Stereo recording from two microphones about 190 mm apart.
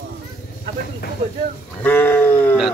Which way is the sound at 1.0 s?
60° left (ahead or behind).